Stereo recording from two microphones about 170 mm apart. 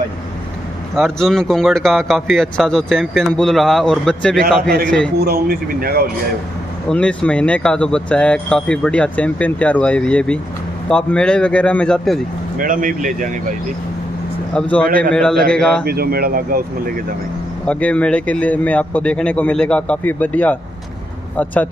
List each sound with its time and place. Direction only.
0.9 s speech: centre (ahead or behind)
5.2 s speech: 60° right (ahead or behind)
6.9 s speech: 5° left (ahead or behind)
12.5 s speech: 55° right (ahead or behind)
14.5 s speech: 5° left (ahead or behind)
15.8 s speech: 65° right (ahead or behind)
17.6 s speech: 5° left (ahead or behind)